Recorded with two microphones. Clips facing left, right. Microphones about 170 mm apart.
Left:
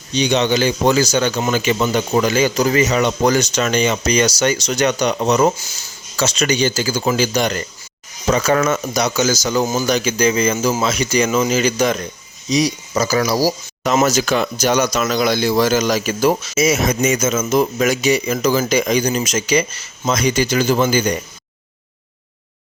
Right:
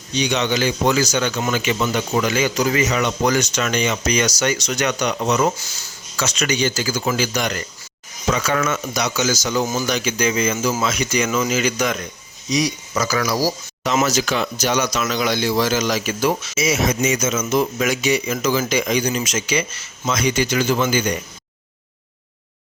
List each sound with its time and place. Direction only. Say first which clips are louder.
0.2 s speech: left 4 dB; 30° left (ahead or behind)
13.8 s speech: left 3 dB; 45° left (ahead or behind)